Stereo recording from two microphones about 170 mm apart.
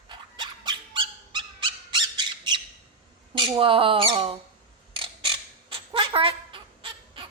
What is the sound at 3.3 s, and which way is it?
Speech, 30° right (ahead or behind).